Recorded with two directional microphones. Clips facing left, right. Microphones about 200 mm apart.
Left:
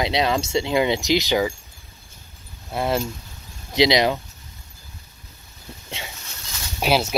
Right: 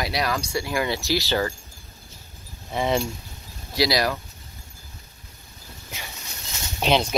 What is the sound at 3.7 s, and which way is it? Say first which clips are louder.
Speech: left 5 dB; 20° left (ahead or behind).